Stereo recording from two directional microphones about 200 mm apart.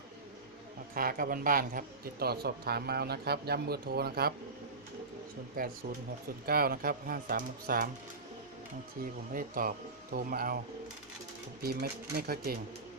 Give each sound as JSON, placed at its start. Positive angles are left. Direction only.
{"t": 0.9, "sound": "a man's voice", "side_deg": -45}
{"t": 5.6, "sound": "a man's voice", "side_deg": -45}
{"t": 9.3, "sound": "a man's voice", "side_deg": -45}
{"t": 11.6, "sound": "a man's voice", "side_deg": -50}